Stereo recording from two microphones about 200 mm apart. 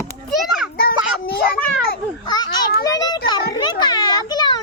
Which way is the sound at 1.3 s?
50° left (ahead or behind).